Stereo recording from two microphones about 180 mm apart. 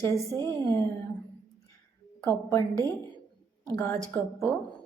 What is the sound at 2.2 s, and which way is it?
Speech, 15° left (ahead or behind).